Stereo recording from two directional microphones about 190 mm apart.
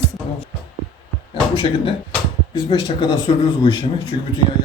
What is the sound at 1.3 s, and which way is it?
Speech, 30° left (ahead or behind).